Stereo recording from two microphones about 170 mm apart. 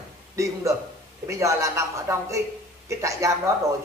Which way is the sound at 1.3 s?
20° right (ahead or behind).